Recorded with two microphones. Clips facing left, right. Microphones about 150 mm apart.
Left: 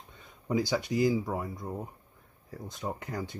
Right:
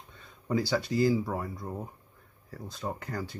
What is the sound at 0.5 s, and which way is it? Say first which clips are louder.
Speech: even; 15° left (ahead or behind).